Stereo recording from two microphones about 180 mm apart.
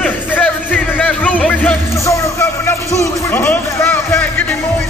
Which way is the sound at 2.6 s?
15° left (ahead or behind).